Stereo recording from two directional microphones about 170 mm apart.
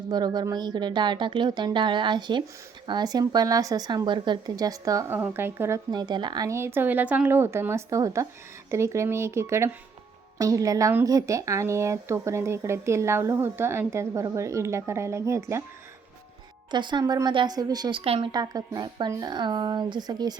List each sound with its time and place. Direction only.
0.1 s speech: 25° right (ahead or behind)
16.7 s speech: 25° right (ahead or behind)
18.0 s a woman's voice: 35° right (ahead or behind)
18.3 s speech: 20° right (ahead or behind)